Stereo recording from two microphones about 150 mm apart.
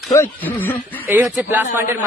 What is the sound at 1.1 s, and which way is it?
Speech, 10° right (ahead or behind).